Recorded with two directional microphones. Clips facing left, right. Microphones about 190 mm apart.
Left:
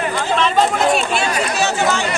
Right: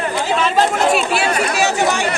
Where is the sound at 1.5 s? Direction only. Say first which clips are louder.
Even; 15° right (ahead or behind).